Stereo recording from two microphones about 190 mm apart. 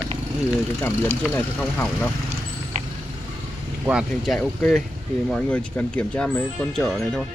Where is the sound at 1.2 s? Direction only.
5° left (ahead or behind).